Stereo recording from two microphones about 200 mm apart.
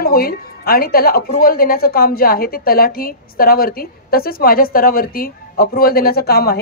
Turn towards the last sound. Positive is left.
turn(degrees=50)  # may be behind; listen again after turning